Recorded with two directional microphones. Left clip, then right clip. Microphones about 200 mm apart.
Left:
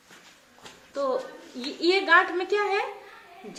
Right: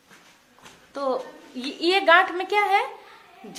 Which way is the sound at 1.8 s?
40° right (ahead or behind).